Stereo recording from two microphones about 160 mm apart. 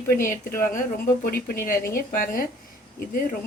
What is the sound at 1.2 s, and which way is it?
A woman's voice, 70° left (ahead or behind).